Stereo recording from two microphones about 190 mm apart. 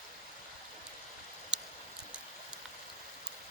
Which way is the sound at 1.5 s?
5° right (ahead or behind).